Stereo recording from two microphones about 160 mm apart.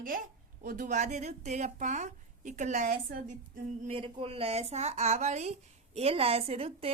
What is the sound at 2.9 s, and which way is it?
Speech, 60° right (ahead or behind).